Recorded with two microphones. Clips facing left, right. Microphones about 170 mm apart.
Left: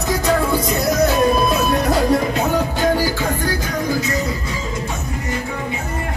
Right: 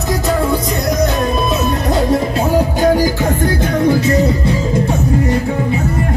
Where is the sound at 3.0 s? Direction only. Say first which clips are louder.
Right 5 dB; 20° right (ahead or behind).